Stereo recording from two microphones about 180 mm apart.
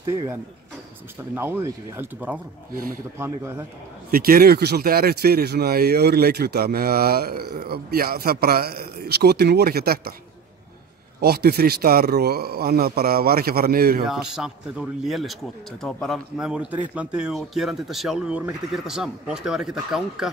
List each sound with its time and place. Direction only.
1.3 s speech: 10° right (ahead or behind)
2.7 s speech: 50° right (ahead or behind)
3.2 s speech: 15° right (ahead or behind)
4.1 s speech: 55° right (ahead or behind)
11.1 s speech: 60° right (ahead or behind)
14.0 s a man's voice: centre (ahead or behind)